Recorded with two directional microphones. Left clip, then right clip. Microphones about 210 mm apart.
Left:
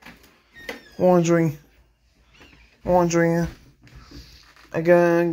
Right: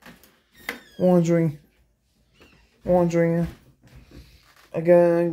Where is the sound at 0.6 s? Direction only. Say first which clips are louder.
Left 2 dB; 15° right (ahead or behind).